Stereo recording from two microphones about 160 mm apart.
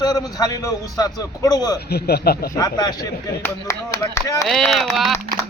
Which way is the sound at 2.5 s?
25° left (ahead or behind).